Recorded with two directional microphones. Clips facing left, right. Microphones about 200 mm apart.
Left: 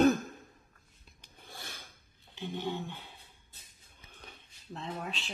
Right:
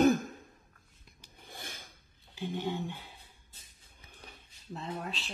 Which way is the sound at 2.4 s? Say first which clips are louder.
Right 2 dB; 15° right (ahead or behind).